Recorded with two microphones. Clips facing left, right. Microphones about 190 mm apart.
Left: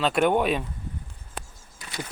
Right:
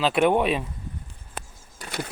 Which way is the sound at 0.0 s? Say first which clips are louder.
Right 1 dB; centre (ahead or behind).